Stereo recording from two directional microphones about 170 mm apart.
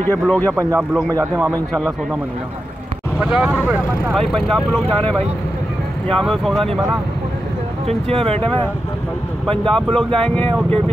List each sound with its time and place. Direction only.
0.0 s speech: 10° left (ahead or behind)
0.5 s a man's voice: 15° right (ahead or behind)
1.5 s speech: 5° left (ahead or behind)
3.2 s speech: 5° right (ahead or behind)
6.0 s speech: 5° left (ahead or behind)
7.8 s speech: 35° right (ahead or behind)
9.5 s speech: 5° left (ahead or behind)